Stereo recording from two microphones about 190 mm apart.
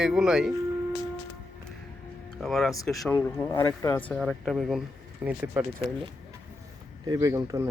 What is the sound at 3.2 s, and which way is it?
Speech, 15° left (ahead or behind).